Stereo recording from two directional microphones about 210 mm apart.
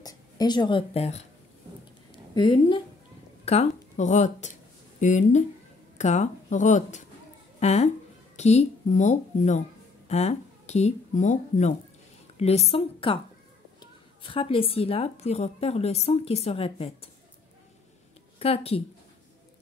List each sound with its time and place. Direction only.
0.0 s speech: 20° left (ahead or behind)
2.3 s a woman's voice: 20° left (ahead or behind)
3.4 s a woman's voice: 30° left (ahead or behind)
14.2 s a woman's voice: 25° left (ahead or behind)
18.4 s a woman's voice: 30° left (ahead or behind)